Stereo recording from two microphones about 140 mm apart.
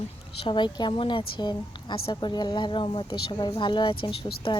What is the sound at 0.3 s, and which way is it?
A woman's voice, 35° left (ahead or behind).